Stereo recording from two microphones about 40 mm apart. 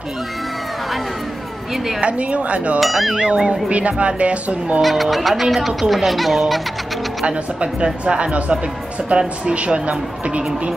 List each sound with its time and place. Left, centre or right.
2.0 s speech: right
2.8 s speech: centre
3.1 s speech: centre
3.6 s speech: right
4.8 s speech: centre
7.2 s speech: right